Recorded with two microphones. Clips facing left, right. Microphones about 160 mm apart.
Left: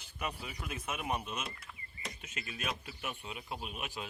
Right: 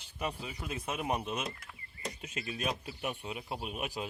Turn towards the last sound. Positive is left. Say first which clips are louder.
# right 4 dB
turn(degrees=-40)  # may be behind; listen again after turning